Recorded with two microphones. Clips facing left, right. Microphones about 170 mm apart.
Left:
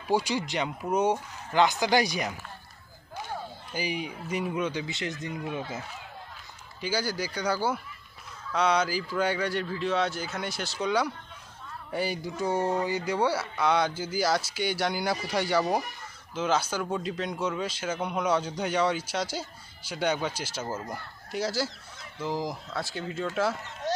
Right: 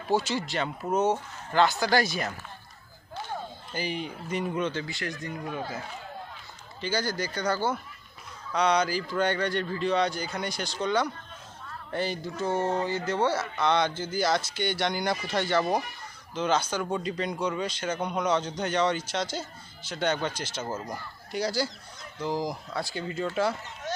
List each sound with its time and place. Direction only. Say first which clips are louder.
0.1 s speech: even; 15° left (ahead or behind)
3.7 s speech: even; 10° left (ahead or behind)
6.8 s speech: right 1 dB; 10° left (ahead or behind)
23.8 s a sound: left 4 dB; 35° left (ahead or behind)